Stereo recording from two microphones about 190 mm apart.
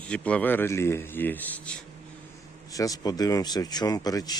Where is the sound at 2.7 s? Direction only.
20° left (ahead or behind).